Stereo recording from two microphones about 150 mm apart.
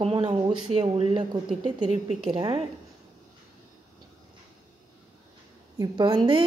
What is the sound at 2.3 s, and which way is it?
Speech, 30° right (ahead or behind).